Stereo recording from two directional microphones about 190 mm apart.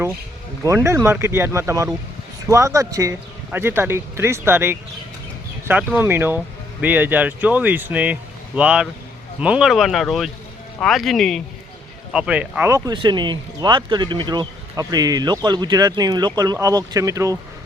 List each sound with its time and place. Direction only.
0.6 s speech: 15° right (ahead or behind)